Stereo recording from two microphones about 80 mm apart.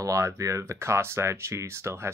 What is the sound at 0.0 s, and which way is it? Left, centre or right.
Speech, right.